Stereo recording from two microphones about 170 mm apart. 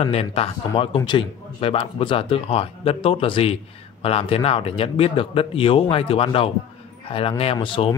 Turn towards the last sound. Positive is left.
turn(degrees=30)  # may be behind; listen again after turning